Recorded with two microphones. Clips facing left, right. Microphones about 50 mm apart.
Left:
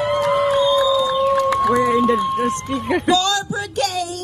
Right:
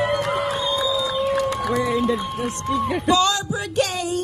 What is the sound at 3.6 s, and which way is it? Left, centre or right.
Speech, centre.